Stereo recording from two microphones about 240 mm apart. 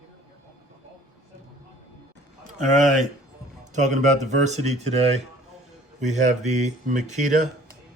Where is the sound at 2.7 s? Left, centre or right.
Right.